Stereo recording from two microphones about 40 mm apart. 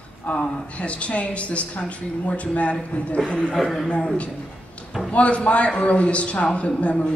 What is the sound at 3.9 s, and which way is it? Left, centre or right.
A man's voice, left.